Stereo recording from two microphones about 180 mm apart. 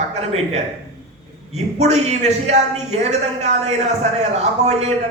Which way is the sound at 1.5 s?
40° right (ahead or behind).